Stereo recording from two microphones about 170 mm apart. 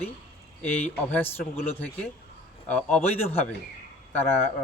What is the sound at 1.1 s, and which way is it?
Speech, 10° left (ahead or behind).